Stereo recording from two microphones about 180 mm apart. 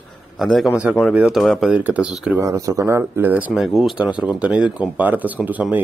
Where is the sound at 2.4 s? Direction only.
20° right (ahead or behind).